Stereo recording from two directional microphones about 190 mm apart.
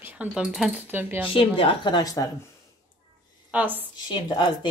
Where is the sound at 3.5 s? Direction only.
10° right (ahead or behind).